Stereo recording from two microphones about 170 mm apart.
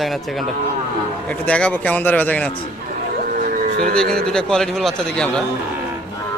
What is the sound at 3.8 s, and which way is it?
Speech, 5° left (ahead or behind).